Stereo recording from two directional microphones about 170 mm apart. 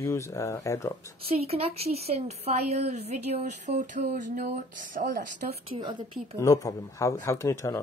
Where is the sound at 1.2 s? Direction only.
35° right (ahead or behind); by 5.5 s 50° right (ahead or behind).